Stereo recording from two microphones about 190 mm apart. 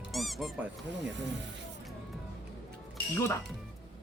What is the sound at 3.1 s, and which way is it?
Speech, 15° left (ahead or behind).